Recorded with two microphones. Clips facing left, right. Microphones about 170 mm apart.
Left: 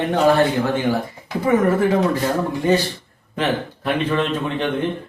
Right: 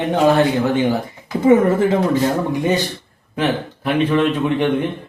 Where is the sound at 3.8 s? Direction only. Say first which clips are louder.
Right 4 dB; 10° right (ahead or behind).